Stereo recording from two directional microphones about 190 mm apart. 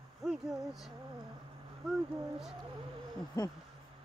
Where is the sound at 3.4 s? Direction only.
20° left (ahead or behind).